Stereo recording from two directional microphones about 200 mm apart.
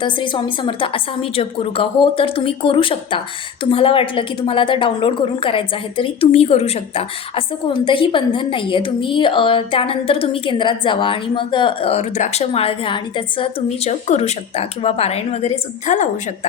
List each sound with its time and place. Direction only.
0.0 s a woman's voice: 25° left (ahead or behind)